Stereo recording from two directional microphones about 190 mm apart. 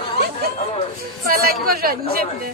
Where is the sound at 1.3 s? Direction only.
55° right (ahead or behind).